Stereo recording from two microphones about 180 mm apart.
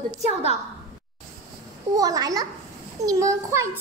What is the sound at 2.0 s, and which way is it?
A child's voice, 20° right (ahead or behind).